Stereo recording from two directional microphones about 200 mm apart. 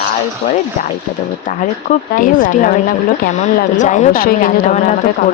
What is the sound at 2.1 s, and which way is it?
A woman's voice, 40° left (ahead or behind).